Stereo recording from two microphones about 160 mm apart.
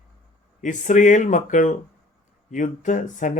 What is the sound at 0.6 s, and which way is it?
Speech, 50° left (ahead or behind).